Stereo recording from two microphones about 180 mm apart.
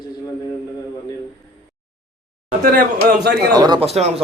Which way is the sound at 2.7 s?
55° right (ahead or behind).